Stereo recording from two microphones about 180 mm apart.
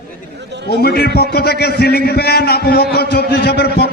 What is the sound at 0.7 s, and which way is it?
A man's voice, 60° left (ahead or behind).